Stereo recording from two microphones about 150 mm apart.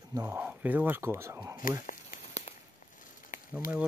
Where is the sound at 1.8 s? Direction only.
55° left (ahead or behind).